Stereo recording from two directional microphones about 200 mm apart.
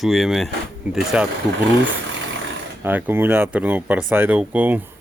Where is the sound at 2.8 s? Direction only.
10° right (ahead or behind).